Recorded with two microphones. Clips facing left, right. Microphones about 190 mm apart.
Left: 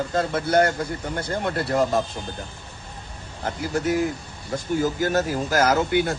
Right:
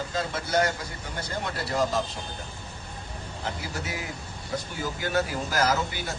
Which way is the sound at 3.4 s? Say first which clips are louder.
Left 10 dB; 50° left (ahead or behind).